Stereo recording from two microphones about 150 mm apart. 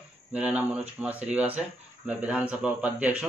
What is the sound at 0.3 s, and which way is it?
Speech, 10° right (ahead or behind).